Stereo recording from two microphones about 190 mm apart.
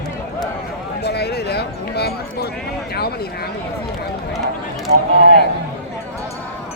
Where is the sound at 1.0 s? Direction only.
60° left (ahead or behind).